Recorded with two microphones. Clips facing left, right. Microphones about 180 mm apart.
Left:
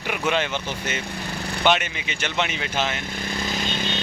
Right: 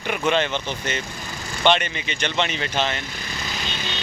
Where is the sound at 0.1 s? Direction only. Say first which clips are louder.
Right 2 dB; 5° left (ahead or behind).